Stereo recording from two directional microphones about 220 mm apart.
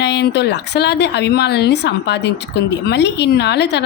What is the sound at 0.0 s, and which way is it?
A woman's voice, 50° left (ahead or behind).